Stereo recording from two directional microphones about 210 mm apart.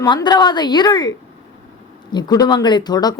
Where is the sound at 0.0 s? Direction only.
20° left (ahead or behind).